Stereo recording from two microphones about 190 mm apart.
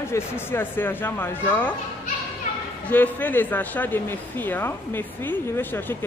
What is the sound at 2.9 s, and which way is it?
A man's voice, 10° left (ahead or behind).